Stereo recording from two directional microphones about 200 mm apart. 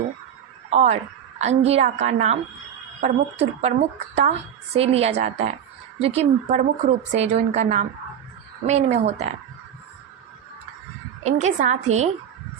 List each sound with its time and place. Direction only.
0.7 s a woman's voice: 35° right (ahead or behind)
11.2 s a woman's voice: 35° right (ahead or behind)